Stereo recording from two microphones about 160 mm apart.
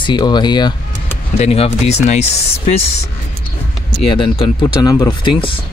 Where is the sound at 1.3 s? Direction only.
40° left (ahead or behind).